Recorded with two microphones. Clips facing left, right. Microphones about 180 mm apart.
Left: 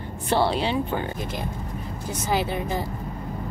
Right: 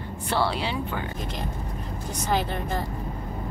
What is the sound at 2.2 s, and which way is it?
Speech, 5° left (ahead or behind).